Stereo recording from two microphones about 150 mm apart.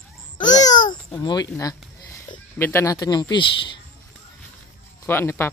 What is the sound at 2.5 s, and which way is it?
Speech, 15° left (ahead or behind).